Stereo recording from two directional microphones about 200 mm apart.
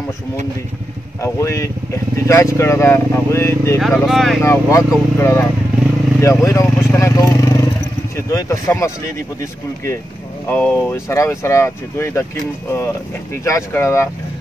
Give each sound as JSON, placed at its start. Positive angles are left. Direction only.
{"t": 1.2, "sound": "speech", "side_deg": 15}
{"t": 3.8, "sound": "speech", "side_deg": 0}
{"t": 4.4, "sound": "speech", "side_deg": 15}
{"t": 10.5, "sound": "speech", "side_deg": 10}